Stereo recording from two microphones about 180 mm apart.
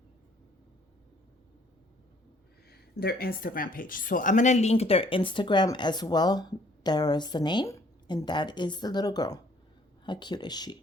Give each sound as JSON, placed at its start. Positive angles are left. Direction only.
{"t": 2.6, "sound": "speech", "side_deg": 60}